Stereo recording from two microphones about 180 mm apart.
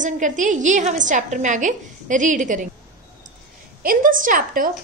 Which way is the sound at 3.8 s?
50° right (ahead or behind).